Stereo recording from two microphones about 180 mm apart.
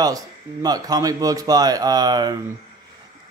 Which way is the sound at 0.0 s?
20° right (ahead or behind).